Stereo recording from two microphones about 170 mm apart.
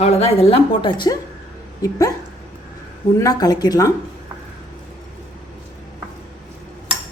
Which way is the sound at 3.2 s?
20° left (ahead or behind).